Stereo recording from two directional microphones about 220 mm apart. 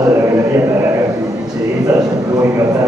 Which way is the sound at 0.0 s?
15° right (ahead or behind).